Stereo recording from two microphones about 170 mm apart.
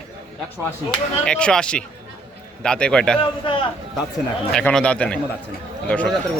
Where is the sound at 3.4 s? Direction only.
30° left (ahead or behind).